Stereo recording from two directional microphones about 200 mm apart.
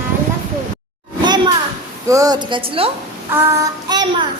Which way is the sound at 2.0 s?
15° right (ahead or behind).